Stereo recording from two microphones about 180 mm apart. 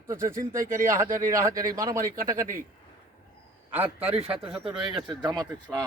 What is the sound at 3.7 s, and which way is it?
Speech, 10° right (ahead or behind).